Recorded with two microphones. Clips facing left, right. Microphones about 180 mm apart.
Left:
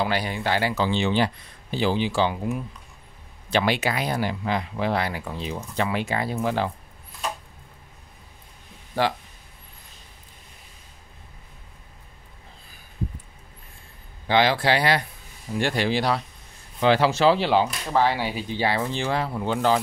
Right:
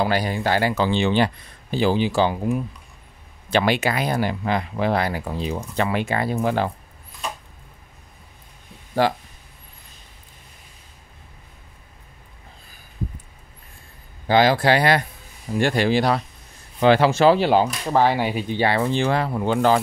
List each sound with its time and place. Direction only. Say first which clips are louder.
0.0 s speech: right 4 dB; 45° right (ahead or behind)
5.8 s speech: right 2 dB; 55° right (ahead or behind)
9.0 s speech: right 4 dB; 40° right (ahead or behind)
14.2 s speech: right 4 dB; 40° right (ahead or behind)